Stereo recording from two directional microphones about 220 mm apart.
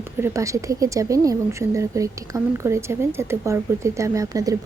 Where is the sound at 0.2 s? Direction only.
15° right (ahead or behind).